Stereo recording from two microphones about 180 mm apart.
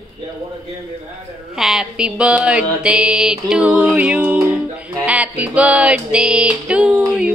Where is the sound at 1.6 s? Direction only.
5° right (ahead or behind).